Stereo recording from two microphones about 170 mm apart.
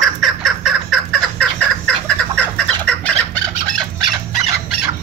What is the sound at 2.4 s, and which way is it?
Chicken, 5° left (ahead or behind).